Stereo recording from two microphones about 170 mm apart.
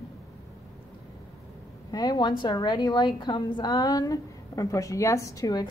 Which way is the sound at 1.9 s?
20° left (ahead or behind).